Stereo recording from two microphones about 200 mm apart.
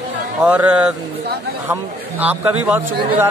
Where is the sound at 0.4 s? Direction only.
5° right (ahead or behind).